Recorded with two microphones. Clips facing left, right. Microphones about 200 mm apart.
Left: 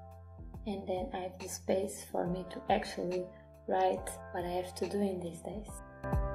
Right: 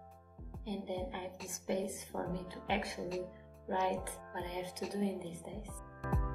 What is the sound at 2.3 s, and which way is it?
Speech, 30° left (ahead or behind).